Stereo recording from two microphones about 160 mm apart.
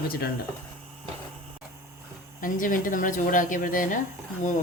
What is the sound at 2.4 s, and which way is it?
Speech, 55° left (ahead or behind).